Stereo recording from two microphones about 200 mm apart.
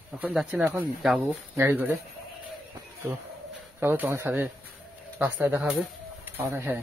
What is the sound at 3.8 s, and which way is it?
Speech, 10° right (ahead or behind).